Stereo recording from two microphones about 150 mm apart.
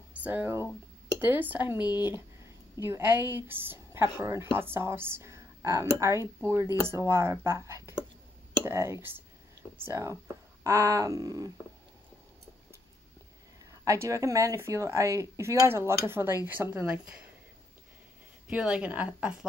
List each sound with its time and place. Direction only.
0.1 s speech: 10° right (ahead or behind)
13.7 s speech: 20° right (ahead or behind)
18.5 s speech: 5° right (ahead or behind)